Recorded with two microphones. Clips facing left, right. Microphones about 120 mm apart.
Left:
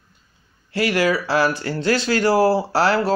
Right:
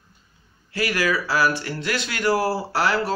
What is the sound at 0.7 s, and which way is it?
Speech, 25° left (ahead or behind).